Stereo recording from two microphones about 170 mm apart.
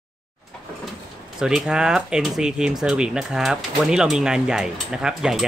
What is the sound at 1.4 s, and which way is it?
Speech, 5° right (ahead or behind).